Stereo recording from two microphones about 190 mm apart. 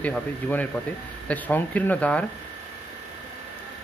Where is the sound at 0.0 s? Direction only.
10° left (ahead or behind).